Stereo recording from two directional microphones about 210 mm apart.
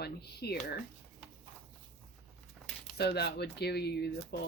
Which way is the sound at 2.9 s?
50° left (ahead or behind).